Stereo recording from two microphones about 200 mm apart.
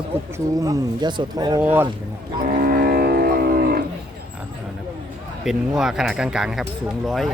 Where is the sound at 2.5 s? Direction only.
45° right (ahead or behind).